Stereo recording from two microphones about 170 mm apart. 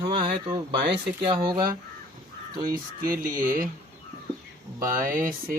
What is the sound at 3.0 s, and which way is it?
Music, 55° right (ahead or behind).